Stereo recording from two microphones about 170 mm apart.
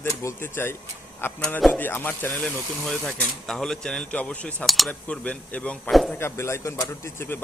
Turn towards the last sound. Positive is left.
turn(degrees=15)  # may be behind; listen again after turning